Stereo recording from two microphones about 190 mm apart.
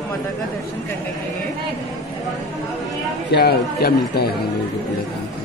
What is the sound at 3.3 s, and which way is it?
A man's voice, 55° left (ahead or behind).